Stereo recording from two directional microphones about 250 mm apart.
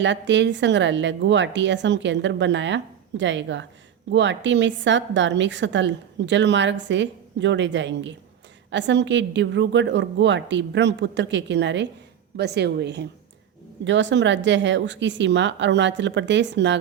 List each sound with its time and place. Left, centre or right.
0.0 s a woman's voice: right